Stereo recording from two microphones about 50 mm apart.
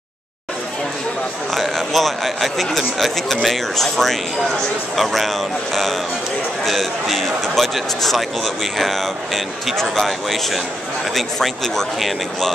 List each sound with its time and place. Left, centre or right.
1.5 s a man's voice: centre